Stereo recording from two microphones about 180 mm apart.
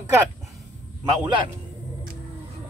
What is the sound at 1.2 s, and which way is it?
Speech, 25° right (ahead or behind).